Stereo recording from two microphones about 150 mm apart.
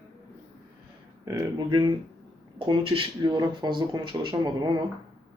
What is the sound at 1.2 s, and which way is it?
Speech, 20° right (ahead or behind).